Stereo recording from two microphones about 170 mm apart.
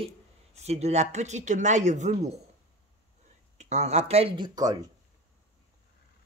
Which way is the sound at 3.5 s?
40° right (ahead or behind).